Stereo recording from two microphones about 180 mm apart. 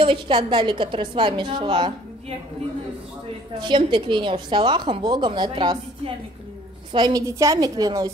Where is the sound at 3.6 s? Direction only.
25° right (ahead or behind).